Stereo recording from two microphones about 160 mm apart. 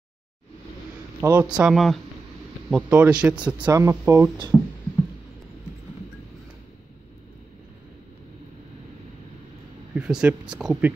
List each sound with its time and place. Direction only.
1.2 s a man's voice: 15° right (ahead or behind)
1.6 s a man's voice: centre (ahead or behind); by 4.3 s 15° right (ahead or behind)
4.5 s a sound: 10° left (ahead or behind)
9.9 s speech: 5° right (ahead or behind)